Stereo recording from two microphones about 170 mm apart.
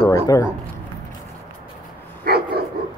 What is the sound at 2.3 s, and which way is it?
Bow-wow, 65° right (ahead or behind).